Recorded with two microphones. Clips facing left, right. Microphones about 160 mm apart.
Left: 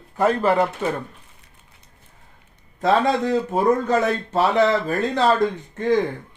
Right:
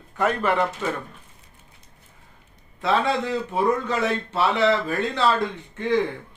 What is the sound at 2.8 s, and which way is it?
Speech, 40° left (ahead or behind).